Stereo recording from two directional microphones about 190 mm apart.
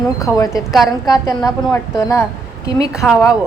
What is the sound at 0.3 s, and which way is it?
Speech, 20° left (ahead or behind).